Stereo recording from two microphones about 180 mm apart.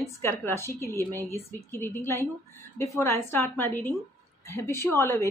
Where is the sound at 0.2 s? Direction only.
15° left (ahead or behind).